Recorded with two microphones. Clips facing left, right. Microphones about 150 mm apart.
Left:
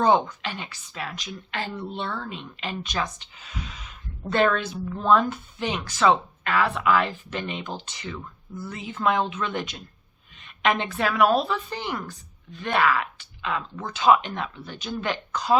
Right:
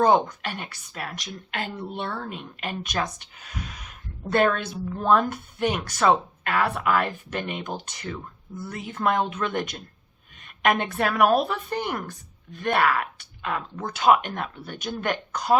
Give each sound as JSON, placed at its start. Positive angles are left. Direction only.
{"t": 0.0, "sound": "speech", "side_deg": -50}